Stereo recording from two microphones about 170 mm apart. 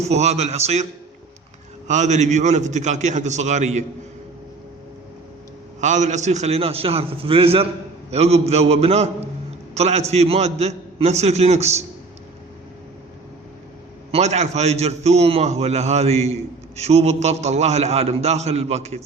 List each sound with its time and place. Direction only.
0.0 s a man's voice: 40° right (ahead or behind)
1.9 s a man's voice: 45° right (ahead or behind)
5.8 s a man's voice: 45° right (ahead or behind)
14.1 s a man's voice: 40° right (ahead or behind)